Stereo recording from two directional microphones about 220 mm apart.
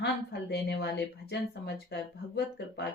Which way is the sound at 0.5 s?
50° left (ahead or behind).